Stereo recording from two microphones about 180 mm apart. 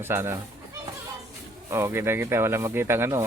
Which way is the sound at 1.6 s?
15° right (ahead or behind).